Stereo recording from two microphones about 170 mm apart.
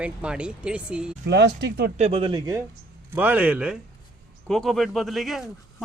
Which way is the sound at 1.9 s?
35° right (ahead or behind).